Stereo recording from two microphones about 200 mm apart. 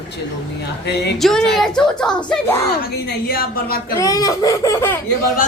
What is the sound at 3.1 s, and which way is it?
Speech, 50° left (ahead or behind).